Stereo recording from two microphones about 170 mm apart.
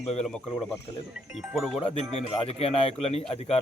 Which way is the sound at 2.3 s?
35° left (ahead or behind).